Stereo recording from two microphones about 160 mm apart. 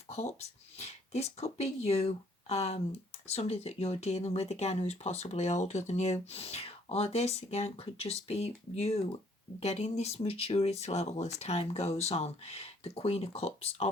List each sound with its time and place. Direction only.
0.1 s speech: 40° left (ahead or behind)